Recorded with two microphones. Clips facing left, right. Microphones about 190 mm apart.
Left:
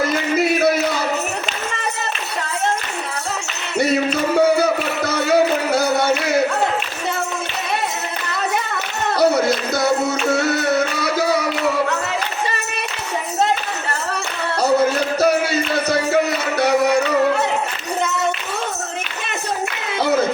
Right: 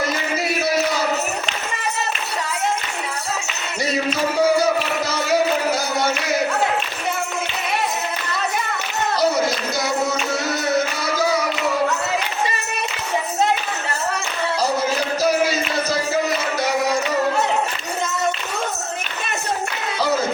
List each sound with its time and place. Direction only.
4.4 s music: 60° left (ahead or behind)
9.1 s music: 60° left (ahead or behind)
14.6 s music: 60° left (ahead or behind)